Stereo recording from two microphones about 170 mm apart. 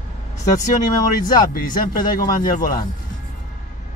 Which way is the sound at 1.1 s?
55° left (ahead or behind).